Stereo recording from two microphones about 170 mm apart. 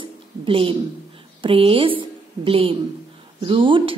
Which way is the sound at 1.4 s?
30° right (ahead or behind).